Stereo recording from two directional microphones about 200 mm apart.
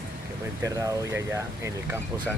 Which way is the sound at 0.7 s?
15° right (ahead or behind).